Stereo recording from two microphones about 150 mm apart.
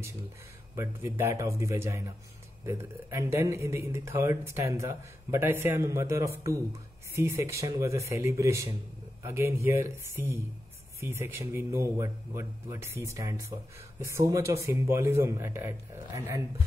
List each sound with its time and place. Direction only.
0.7 s a man's voice: 15° right (ahead or behind)